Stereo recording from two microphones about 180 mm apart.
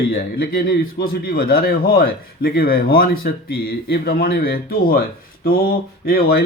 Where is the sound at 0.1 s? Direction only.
55° left (ahead or behind).